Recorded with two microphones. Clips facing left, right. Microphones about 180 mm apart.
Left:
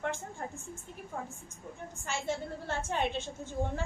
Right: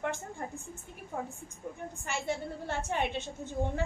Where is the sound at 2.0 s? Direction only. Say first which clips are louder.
Even; 15° right (ahead or behind).